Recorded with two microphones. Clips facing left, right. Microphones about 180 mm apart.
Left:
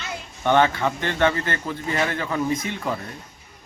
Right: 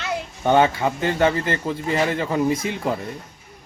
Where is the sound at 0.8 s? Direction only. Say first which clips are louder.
Right 2 dB; 30° right (ahead or behind).